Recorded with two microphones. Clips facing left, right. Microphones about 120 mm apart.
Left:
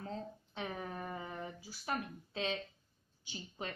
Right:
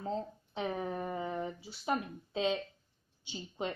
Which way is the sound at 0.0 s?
25° right (ahead or behind).